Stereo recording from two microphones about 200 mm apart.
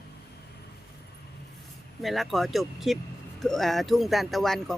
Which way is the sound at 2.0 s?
Centre (ahead or behind).